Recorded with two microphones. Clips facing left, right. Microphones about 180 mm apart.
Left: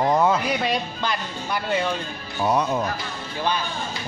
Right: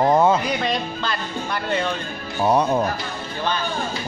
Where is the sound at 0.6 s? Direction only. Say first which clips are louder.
Right 1 dB; 10° left (ahead or behind).